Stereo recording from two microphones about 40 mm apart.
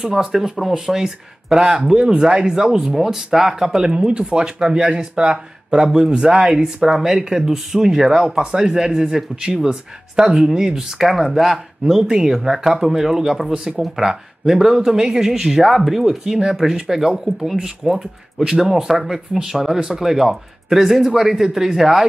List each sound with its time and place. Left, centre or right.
0.0 s speech: centre
1.6 s speech: right
4.7 s speech: right; by 11.6 s centre
12.1 s speech: centre
16.3 s speech: right
16.5 s speech: centre